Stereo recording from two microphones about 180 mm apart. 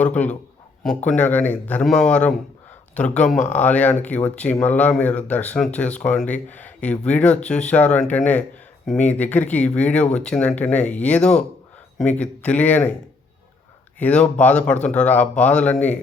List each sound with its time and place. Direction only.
0.0 s speech: 10° left (ahead or behind)
14.0 s speech: 5° left (ahead or behind)